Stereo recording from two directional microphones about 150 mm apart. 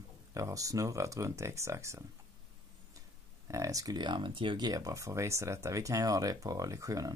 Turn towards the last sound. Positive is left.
turn(degrees=-20)  # may be behind; listen again after turning